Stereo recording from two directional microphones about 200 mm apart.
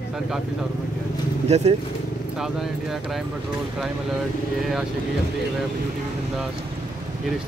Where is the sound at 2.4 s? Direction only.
Centre (ahead or behind).